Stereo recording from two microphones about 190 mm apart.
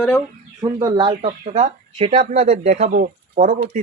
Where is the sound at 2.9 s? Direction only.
50° right (ahead or behind).